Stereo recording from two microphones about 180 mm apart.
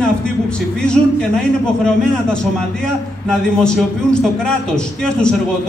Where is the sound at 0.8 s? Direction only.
5° left (ahead or behind).